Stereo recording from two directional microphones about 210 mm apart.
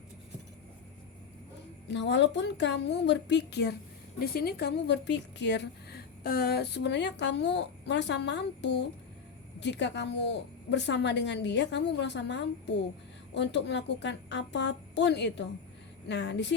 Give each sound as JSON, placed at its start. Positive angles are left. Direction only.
{"t": 1.9, "sound": "a woman's voice", "side_deg": 55}